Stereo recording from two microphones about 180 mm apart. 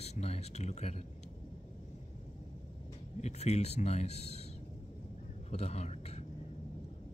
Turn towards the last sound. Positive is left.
turn(degrees=35)  # may be behind; listen again after turning